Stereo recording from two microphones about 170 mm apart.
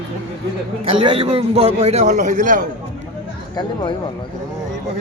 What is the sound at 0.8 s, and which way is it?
A man's voice, 30° right (ahead or behind).